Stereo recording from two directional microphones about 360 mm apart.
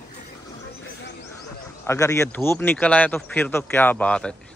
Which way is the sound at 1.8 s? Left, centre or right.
Centre.